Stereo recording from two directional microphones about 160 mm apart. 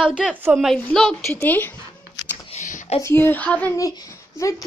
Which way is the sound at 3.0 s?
15° left (ahead or behind).